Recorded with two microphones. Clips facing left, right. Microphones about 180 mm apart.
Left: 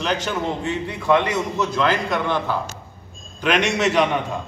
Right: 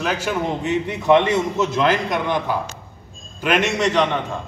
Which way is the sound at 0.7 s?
20° right (ahead or behind).